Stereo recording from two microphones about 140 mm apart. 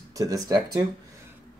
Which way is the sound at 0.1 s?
25° right (ahead or behind).